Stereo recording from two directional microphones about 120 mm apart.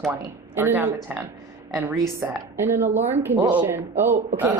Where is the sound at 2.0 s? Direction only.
25° right (ahead or behind).